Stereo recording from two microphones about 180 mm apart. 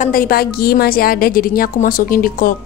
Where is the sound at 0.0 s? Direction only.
55° left (ahead or behind).